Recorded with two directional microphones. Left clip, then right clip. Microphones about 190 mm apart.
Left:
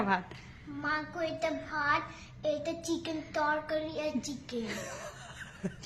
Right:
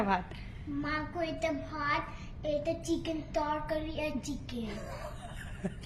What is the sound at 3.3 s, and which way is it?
Speech, 20° left (ahead or behind).